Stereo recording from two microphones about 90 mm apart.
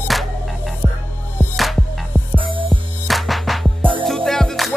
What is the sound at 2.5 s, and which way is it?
Music, 70° right (ahead or behind).